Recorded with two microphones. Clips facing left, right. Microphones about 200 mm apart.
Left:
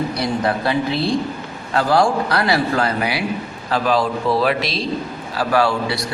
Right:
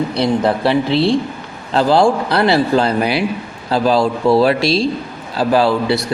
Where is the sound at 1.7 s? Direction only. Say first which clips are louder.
Right 4 dB; 25° right (ahead or behind).